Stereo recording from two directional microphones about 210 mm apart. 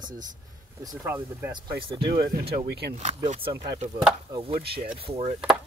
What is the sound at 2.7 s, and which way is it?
Speech, 50° right (ahead or behind).